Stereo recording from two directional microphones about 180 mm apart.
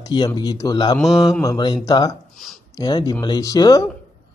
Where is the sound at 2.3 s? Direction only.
Centre (ahead or behind).